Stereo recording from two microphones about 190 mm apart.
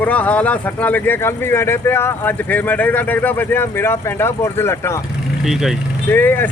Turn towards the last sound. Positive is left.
turn(degrees=10)  # may be behind; listen again after turning